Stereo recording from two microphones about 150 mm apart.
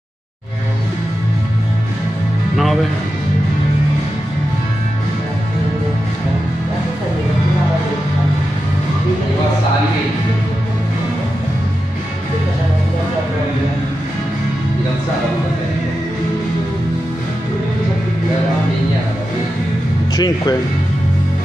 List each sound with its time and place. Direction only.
2.5 s music: centre (ahead or behind)
20.2 s music: 25° left (ahead or behind)